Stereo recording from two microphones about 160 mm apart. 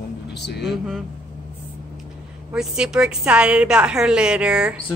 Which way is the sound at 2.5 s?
5° right (ahead or behind).